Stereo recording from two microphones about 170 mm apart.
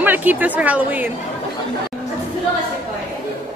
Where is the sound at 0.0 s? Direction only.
10° right (ahead or behind).